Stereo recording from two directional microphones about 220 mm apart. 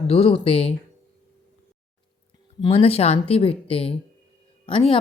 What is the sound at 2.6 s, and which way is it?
Speech, 25° left (ahead or behind).